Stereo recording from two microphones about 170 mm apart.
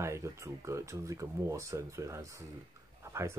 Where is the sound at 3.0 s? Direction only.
15° right (ahead or behind).